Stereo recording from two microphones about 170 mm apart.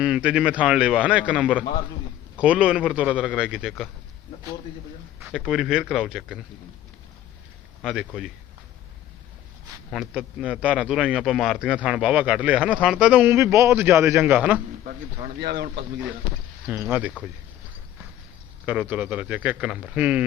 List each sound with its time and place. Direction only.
0.0 s a man's voice: 5° right (ahead or behind)
5.3 s a man's voice: centre (ahead or behind)
7.8 s a man's voice: centre (ahead or behind)
9.9 s a man's voice: centre (ahead or behind)
15.4 s speech: 75° right (ahead or behind)
16.6 s a man's voice: 15° right (ahead or behind)
18.6 s a man's voice: 10° right (ahead or behind)